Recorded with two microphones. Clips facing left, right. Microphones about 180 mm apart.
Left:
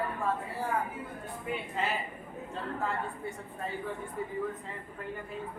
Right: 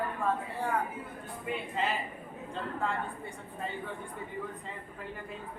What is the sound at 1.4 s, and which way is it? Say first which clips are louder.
Speech: right 1 dB; centre (ahead or behind).